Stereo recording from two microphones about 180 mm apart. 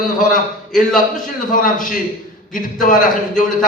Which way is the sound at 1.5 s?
50° left (ahead or behind).